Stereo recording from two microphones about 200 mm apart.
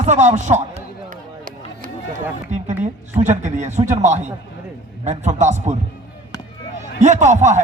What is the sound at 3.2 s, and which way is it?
A man's voice, 35° right (ahead or behind).